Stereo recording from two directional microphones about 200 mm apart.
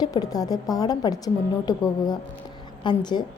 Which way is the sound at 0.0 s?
20° left (ahead or behind).